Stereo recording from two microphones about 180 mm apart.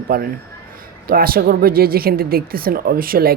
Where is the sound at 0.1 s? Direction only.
55° right (ahead or behind).